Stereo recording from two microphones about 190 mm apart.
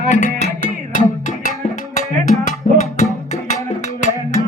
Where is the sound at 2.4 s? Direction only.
40° left (ahead or behind).